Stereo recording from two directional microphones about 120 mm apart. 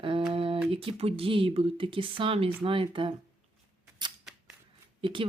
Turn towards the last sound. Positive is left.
turn(degrees=-45)  # may be behind; listen again after turning